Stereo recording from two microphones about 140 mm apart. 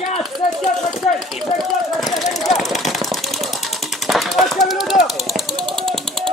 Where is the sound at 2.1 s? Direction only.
Centre (ahead or behind).